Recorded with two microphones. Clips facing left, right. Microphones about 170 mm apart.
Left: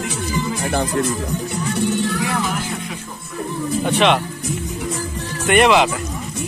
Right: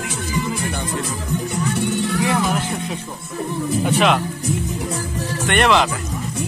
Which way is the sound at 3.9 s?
Centre (ahead or behind).